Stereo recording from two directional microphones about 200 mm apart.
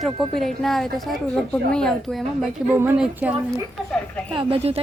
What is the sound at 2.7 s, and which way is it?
Speech, 10° right (ahead or behind).